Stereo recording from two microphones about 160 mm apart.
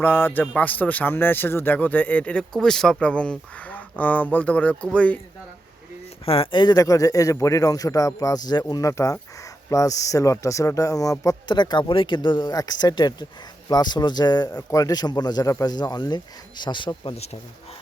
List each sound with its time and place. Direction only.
0.0 s a man's voice: 10° left (ahead or behind)
6.2 s speech: 35° left (ahead or behind)